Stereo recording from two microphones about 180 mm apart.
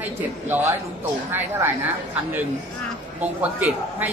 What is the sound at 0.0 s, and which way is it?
A woman's voice, 10° right (ahead or behind).